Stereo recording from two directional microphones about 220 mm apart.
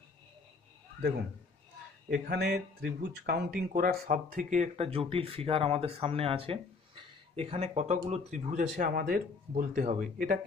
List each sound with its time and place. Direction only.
2.0 s speech: 45° right (ahead or behind)